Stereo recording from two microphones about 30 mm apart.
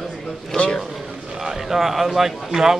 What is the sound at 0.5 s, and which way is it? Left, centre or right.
Speech, centre.